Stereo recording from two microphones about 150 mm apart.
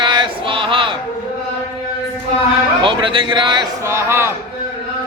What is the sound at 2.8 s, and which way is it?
Music, 35° right (ahead or behind).